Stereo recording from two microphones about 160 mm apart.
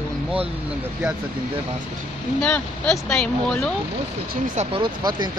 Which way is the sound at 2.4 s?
5° left (ahead or behind).